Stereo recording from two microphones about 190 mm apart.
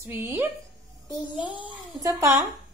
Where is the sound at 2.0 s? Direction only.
15° right (ahead or behind).